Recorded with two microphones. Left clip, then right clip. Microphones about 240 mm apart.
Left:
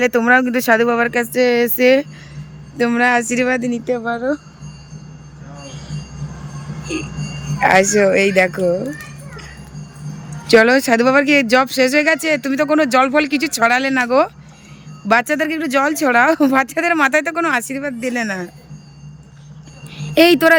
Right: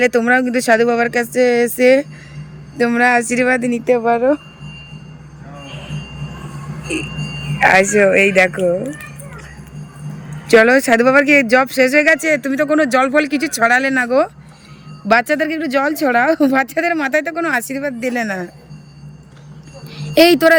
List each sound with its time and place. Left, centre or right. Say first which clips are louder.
0.0 s speech: even; centre
7.6 s speech: right 1 dB; centre
10.4 s speech: right 1 dB; centre
20.0 s speech: right 1 dB; centre